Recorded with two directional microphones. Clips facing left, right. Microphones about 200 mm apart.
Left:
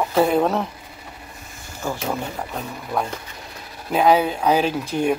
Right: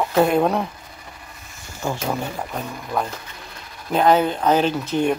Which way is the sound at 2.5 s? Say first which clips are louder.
Left 1 dB; 5° left (ahead or behind).